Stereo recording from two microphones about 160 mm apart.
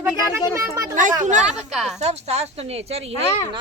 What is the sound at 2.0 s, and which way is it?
A woman's voice, 40° right (ahead or behind).